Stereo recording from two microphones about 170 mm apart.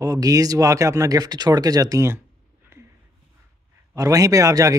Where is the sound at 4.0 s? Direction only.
20° right (ahead or behind).